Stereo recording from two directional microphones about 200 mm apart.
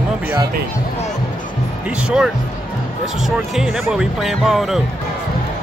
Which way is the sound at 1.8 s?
5° right (ahead or behind).